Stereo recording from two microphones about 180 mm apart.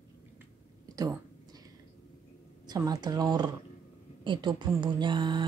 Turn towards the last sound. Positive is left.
turn(degrees=-25)  # may be behind; listen again after turning